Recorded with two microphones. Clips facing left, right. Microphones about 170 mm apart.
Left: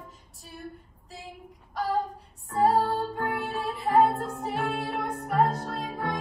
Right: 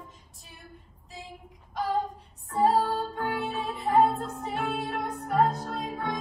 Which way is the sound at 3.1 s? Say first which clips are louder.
Even; centre (ahead or behind).